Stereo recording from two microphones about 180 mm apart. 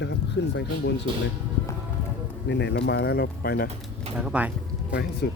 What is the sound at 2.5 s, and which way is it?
Speech, 70° left (ahead or behind).